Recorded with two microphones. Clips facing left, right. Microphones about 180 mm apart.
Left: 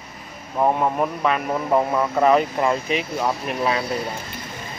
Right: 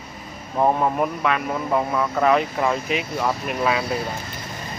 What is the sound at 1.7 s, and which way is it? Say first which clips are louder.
Speech: left 3 dB; 20° left (ahead or behind).